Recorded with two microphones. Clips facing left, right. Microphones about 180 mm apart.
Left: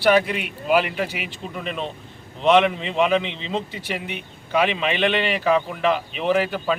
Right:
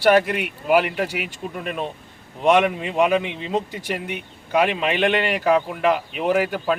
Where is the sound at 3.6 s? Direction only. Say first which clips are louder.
Right 5 dB; 45° right (ahead or behind).